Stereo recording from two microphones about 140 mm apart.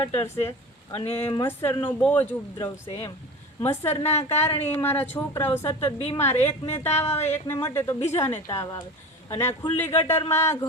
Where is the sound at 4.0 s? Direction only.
50° left (ahead or behind).